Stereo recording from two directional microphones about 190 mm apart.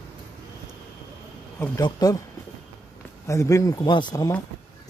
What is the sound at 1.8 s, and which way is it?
Speech, 20° left (ahead or behind).